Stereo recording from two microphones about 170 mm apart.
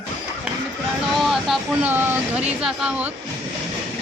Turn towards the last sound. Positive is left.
turn(degrees=-5)  # may be behind; listen again after turning